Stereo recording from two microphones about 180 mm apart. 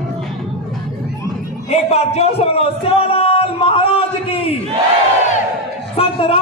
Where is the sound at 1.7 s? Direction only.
35° left (ahead or behind).